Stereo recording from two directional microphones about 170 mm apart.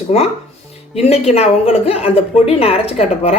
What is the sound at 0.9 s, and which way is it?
A woman's voice, 35° left (ahead or behind).